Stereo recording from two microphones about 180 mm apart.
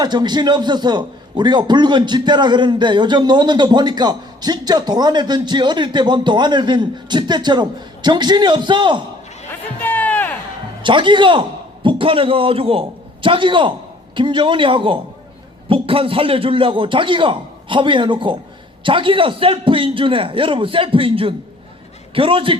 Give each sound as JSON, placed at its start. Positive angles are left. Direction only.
{"t": 0.0, "sound": "a man's voice", "side_deg": -25}
{"t": 9.8, "sound": "music", "side_deg": 10}
{"t": 10.8, "sound": "a man's voice", "side_deg": -25}